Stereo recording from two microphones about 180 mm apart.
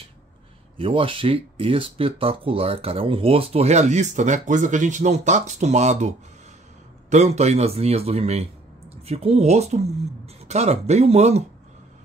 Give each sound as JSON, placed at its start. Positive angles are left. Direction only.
{"t": 0.7, "sound": "speech", "side_deg": -30}